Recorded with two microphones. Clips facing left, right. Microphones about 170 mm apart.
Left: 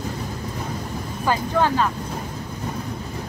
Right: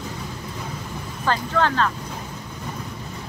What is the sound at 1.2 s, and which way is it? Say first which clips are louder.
Speech: left 1 dB; 10° left (ahead or behind).